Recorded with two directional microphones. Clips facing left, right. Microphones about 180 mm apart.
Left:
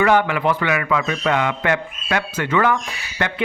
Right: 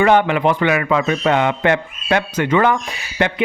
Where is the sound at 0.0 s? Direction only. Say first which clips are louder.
Right 3 dB; 25° right (ahead or behind).